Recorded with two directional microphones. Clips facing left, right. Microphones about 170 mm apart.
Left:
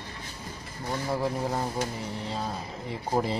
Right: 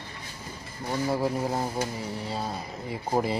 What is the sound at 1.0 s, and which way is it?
Speech, 5° right (ahead or behind).